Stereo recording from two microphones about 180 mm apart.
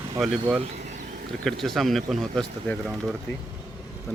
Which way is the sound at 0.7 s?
40° right (ahead or behind).